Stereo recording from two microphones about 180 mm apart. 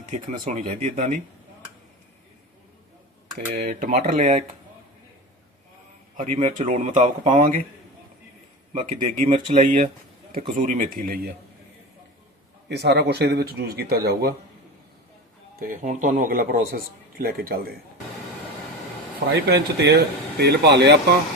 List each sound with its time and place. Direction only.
0.0 s speech: 40° right (ahead or behind)
3.5 s speech: 50° right (ahead or behind)
6.1 s speech: 40° right (ahead or behind)
8.7 s speech: 40° right (ahead or behind); by 11.3 s 55° right (ahead or behind)
12.6 s speech: 70° right (ahead or behind)
15.5 s speech: 50° right (ahead or behind)
19.5 s speech: 65° right (ahead or behind)